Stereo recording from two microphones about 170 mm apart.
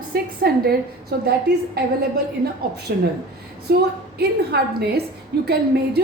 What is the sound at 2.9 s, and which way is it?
Speech, 65° right (ahead or behind).